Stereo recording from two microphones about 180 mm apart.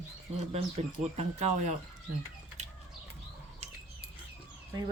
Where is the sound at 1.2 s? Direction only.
35° right (ahead or behind).